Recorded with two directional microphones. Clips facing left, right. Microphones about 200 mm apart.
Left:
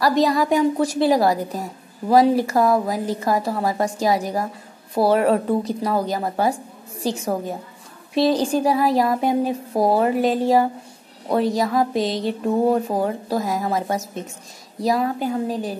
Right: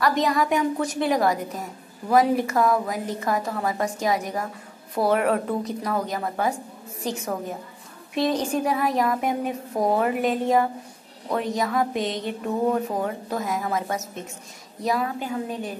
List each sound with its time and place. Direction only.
0.0 s a woman's voice: 35° left (ahead or behind)